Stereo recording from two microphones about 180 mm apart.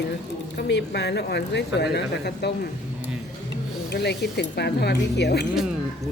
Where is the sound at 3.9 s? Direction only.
70° left (ahead or behind).